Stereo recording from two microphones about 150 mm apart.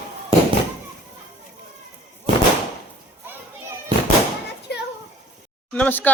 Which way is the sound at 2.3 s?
35° right (ahead or behind).